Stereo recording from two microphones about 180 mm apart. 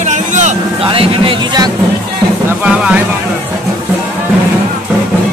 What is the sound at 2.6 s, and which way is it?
Music, 5° right (ahead or behind).